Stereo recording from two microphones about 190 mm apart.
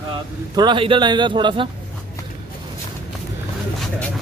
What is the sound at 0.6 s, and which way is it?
A man's voice, 25° right (ahead or behind).